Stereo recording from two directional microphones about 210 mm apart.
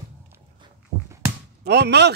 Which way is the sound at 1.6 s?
55° right (ahead or behind).